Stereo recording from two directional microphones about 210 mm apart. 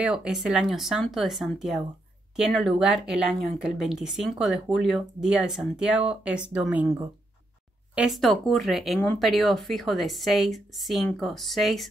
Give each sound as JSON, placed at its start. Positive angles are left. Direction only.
{"t": 0.0, "sound": "speech", "side_deg": -5}